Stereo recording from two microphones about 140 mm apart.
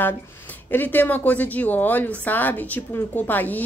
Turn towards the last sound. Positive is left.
turn(degrees=10)  # may be behind; listen again after turning